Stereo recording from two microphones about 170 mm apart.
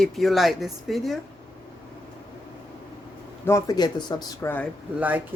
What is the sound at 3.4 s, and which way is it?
Speech, 20° left (ahead or behind).